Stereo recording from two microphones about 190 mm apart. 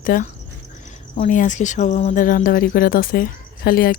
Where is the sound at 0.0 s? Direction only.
45° left (ahead or behind).